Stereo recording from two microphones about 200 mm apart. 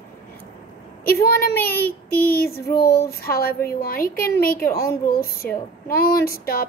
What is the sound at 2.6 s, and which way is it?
Speech, 15° left (ahead or behind).